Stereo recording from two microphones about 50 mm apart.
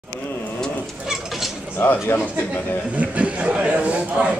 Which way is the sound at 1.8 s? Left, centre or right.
Left.